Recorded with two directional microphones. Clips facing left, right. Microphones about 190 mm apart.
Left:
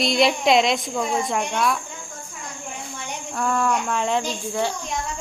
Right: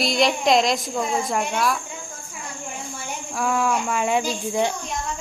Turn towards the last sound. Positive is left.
turn(degrees=-15)  # may be behind; listen again after turning